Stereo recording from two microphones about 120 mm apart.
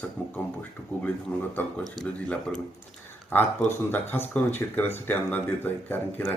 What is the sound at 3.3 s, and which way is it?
Speech, 15° left (ahead or behind).